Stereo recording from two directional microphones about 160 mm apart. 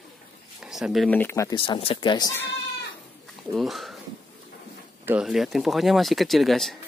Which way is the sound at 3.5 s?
Centre (ahead or behind).